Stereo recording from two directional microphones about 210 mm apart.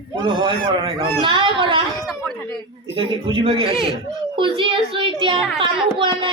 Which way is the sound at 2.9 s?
25° right (ahead or behind).